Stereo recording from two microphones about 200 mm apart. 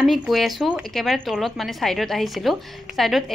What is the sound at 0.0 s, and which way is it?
A woman's voice, centre (ahead or behind).